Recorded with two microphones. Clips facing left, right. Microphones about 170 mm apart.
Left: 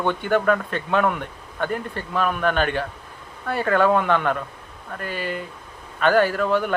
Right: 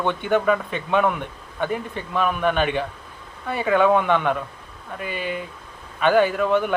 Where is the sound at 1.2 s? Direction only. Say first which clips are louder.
Right 1 dB; 15° right (ahead or behind).